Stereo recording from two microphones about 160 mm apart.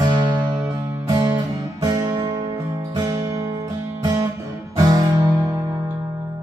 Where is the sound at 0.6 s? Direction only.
20° right (ahead or behind).